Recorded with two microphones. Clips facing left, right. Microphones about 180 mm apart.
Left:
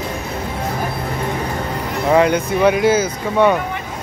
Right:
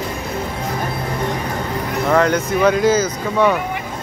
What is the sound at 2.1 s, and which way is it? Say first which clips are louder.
Speech: left 2 dB; 15° left (ahead or behind).